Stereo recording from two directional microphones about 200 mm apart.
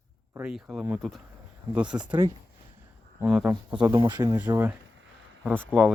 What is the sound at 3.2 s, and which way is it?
Speech, 5° right (ahead or behind).